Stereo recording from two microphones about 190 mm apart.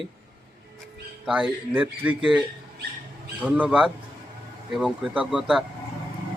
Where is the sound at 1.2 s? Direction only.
5° right (ahead or behind).